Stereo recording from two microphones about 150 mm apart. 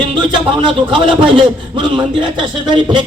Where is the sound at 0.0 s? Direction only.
35° right (ahead or behind).